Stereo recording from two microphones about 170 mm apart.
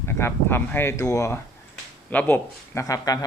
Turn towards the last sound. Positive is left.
turn(degrees=20)  # may be behind; listen again after turning